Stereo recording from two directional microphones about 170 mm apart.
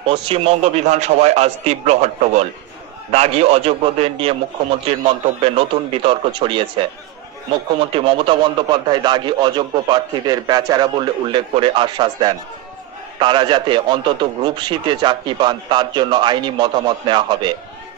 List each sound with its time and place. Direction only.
0.0 s a man's voice: 30° right (ahead or behind)